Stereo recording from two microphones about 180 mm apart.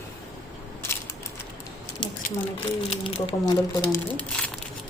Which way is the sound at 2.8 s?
30° left (ahead or behind).